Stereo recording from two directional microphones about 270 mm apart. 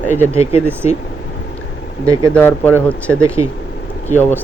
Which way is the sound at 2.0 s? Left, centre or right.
Centre.